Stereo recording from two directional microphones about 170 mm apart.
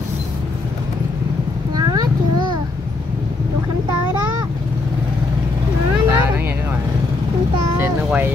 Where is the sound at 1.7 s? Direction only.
25° right (ahead or behind).